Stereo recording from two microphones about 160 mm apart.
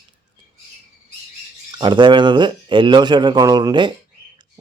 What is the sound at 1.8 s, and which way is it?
Speech, 30° right (ahead or behind).